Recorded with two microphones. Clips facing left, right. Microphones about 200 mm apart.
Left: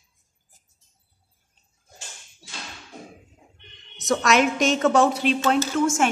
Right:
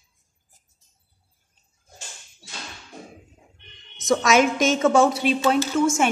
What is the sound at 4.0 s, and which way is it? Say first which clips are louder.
A woman's voice: right 2 dB; centre (ahead or behind).